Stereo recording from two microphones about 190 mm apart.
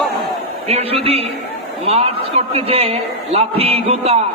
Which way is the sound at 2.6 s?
30° right (ahead or behind).